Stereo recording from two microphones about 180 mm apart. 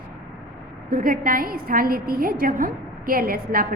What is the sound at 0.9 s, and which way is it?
A woman's voice, 50° right (ahead or behind).